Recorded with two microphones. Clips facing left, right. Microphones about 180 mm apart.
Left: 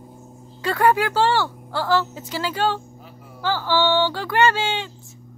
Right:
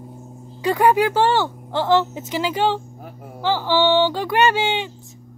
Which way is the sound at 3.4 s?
15° right (ahead or behind).